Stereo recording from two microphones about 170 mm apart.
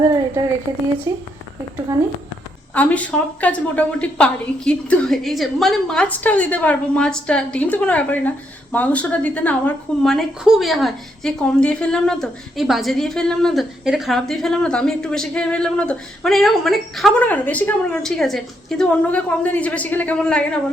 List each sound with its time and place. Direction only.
2.7 s a woman's voice: 10° left (ahead or behind)